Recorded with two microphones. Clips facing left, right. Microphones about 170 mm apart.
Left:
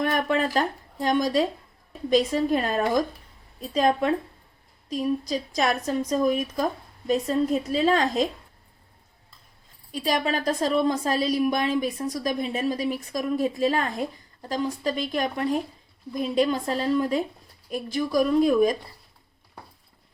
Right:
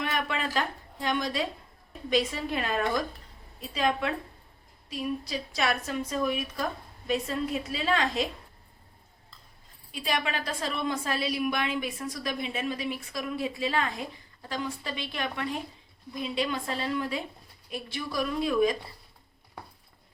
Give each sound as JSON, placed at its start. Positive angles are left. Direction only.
{"t": 0.0, "sound": "a woman's voice", "side_deg": 45}
{"t": 9.9, "sound": "a woman's voice", "side_deg": 40}